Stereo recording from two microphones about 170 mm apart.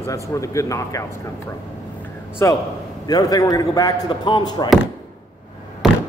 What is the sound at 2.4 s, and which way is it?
A man's voice, 15° left (ahead or behind).